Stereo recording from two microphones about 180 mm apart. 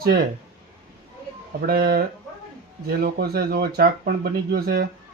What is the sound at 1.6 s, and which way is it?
A man's voice, 55° right (ahead or behind).